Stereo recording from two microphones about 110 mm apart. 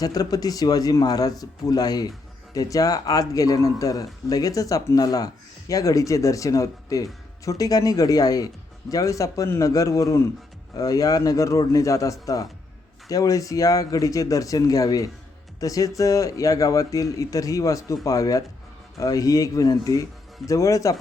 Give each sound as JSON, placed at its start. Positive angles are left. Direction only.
{"t": 0.0, "sound": "speech", "side_deg": 35}